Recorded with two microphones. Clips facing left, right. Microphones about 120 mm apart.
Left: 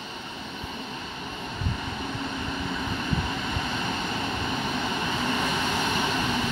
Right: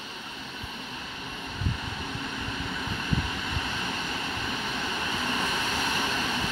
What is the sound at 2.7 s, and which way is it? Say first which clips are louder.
Vehicle: left 1 dB; 25° left (ahead or behind).